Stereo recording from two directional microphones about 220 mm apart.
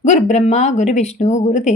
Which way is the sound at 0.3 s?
30° left (ahead or behind).